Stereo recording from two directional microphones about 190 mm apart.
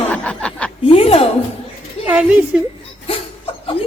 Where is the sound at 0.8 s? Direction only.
30° left (ahead or behind).